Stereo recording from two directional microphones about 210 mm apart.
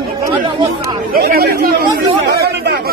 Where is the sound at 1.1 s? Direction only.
45° right (ahead or behind).